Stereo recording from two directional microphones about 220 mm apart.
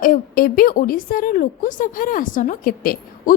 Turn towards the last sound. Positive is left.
turn(degrees=40)  # may be behind; listen again after turning